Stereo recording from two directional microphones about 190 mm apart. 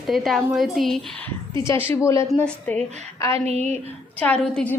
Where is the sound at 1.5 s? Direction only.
15° left (ahead or behind).